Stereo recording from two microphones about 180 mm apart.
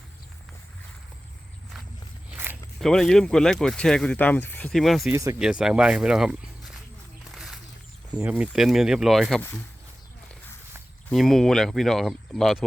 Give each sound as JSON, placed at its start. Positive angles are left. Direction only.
{"t": 2.3, "sound": "zipper", "side_deg": -10}
{"t": 2.8, "sound": "speech", "side_deg": 0}
{"t": 5.1, "sound": "speech", "side_deg": -15}
{"t": 5.4, "sound": "speech", "side_deg": -5}
{"t": 7.3, "sound": "a sound", "side_deg": 0}
{"t": 8.1, "sound": "speech", "side_deg": -5}
{"t": 11.1, "sound": "speech", "side_deg": 0}